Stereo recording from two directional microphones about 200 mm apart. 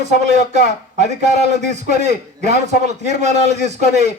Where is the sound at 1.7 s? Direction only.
35° right (ahead or behind).